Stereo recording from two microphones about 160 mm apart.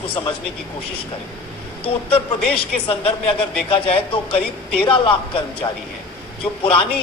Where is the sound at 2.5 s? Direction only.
35° left (ahead or behind).